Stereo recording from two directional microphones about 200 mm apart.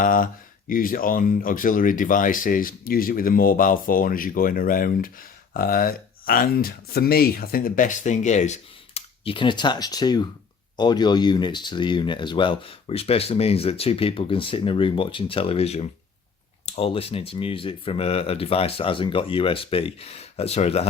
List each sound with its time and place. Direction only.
0.0 s speech: 45° left (ahead or behind)